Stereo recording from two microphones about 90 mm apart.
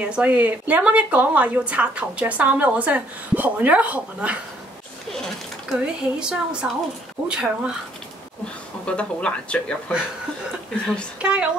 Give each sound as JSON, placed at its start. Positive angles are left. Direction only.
{"t": 0.0, "sound": "a woman's voice", "side_deg": -15}
{"t": 5.7, "sound": "a woman's voice", "side_deg": -10}
{"t": 8.8, "sound": "speech", "side_deg": 10}
{"t": 11.1, "sound": "a woman's voice", "side_deg": -10}